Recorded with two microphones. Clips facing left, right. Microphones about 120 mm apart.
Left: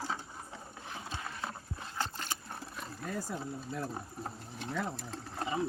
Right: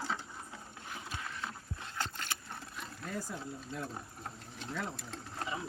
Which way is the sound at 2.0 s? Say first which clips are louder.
Left 2 dB; 35° left (ahead or behind).